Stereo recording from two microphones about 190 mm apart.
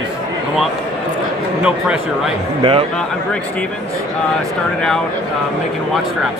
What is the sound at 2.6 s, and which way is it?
Speech, 30° right (ahead or behind).